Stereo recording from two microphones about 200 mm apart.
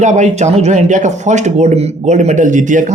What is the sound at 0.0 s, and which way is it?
Speech, 35° right (ahead or behind).